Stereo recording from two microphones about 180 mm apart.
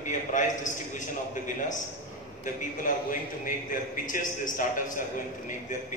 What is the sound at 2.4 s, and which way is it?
A man's voice, 50° left (ahead or behind).